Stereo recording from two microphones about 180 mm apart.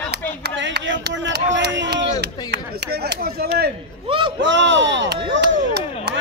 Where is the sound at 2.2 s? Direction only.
65° right (ahead or behind).